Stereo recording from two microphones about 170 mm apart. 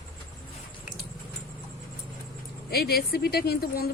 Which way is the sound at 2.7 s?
65° left (ahead or behind).